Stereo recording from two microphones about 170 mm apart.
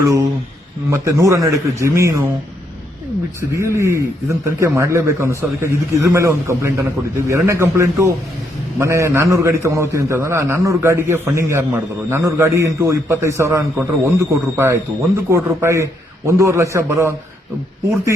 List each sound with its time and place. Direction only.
0.0 s a man's voice: 20° right (ahead or behind)
3.5 s a man's voice: 15° right (ahead or behind)